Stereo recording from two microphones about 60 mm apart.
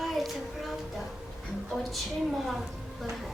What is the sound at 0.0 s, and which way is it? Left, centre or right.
Child singing, centre.